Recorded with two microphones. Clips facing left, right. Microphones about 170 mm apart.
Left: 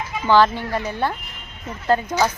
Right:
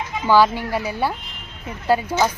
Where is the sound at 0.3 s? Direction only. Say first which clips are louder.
Even; 10° right (ahead or behind).